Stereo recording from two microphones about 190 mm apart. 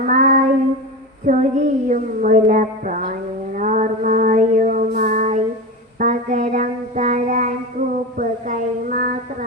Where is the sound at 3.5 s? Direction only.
40° right (ahead or behind).